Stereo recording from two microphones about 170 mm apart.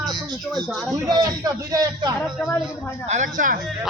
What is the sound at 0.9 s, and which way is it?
A man's voice, 20° right (ahead or behind).